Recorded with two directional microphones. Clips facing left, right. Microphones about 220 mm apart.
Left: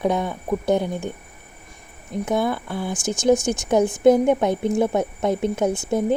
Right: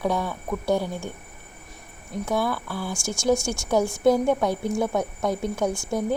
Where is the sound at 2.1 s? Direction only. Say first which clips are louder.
Left 3 dB; 20° left (ahead or behind).